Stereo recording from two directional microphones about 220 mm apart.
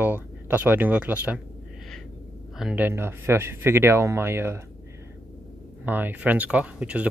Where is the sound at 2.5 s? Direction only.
5° right (ahead or behind).